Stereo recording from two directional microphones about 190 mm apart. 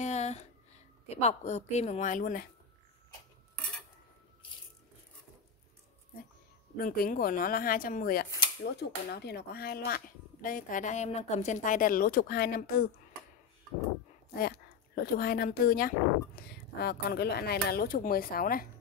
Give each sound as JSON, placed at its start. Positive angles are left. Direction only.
{"t": 0.0, "sound": "a sound", "side_deg": 35}
{"t": 1.0, "sound": "speech", "side_deg": 35}
{"t": 6.8, "sound": "speech", "side_deg": 50}
{"t": 8.6, "sound": "speech", "side_deg": 60}
{"t": 15.0, "sound": "speech", "side_deg": 55}